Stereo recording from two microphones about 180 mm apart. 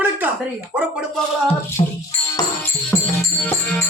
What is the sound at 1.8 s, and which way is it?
Speech, 30° left (ahead or behind).